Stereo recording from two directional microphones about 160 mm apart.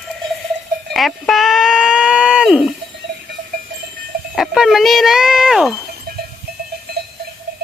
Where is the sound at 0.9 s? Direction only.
Centre (ahead or behind).